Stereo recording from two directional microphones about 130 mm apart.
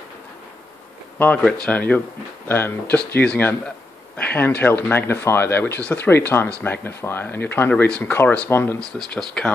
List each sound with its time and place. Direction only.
1.1 s speech: 15° left (ahead or behind)
8.7 s speech: 5° left (ahead or behind)